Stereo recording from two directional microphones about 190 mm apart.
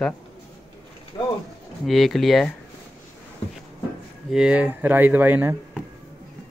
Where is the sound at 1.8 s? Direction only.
Centre (ahead or behind).